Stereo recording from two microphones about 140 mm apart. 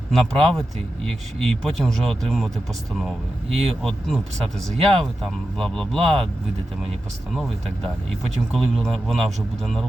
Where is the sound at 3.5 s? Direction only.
45° right (ahead or behind).